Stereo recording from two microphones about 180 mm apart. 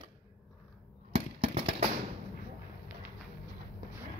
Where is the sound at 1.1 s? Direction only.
30° right (ahead or behind).